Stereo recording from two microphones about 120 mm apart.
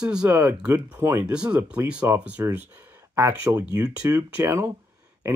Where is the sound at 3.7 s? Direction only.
30° right (ahead or behind).